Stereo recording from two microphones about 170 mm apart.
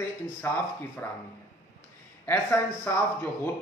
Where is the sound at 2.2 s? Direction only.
15° left (ahead or behind).